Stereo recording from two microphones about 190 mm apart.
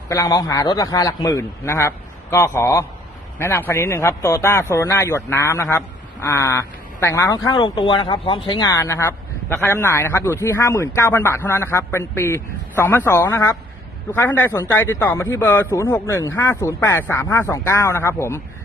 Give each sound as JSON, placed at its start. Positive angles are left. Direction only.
{"t": 0.1, "sound": "speech", "side_deg": 20}